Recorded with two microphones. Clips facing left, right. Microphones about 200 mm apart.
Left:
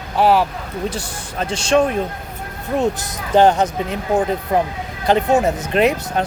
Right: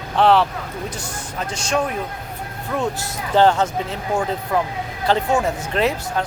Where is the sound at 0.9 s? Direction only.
30° left (ahead or behind).